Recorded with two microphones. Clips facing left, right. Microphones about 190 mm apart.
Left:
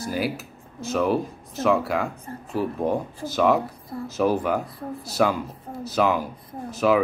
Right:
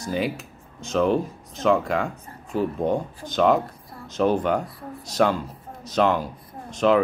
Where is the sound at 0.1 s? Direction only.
5° left (ahead or behind).